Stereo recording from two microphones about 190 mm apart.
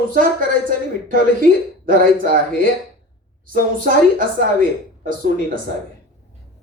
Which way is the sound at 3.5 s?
45° right (ahead or behind).